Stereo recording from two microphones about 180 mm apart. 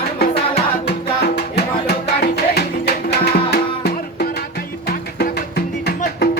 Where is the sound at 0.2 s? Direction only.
65° left (ahead or behind).